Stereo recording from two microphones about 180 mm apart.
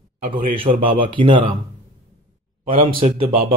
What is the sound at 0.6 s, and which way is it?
Speech, 30° right (ahead or behind).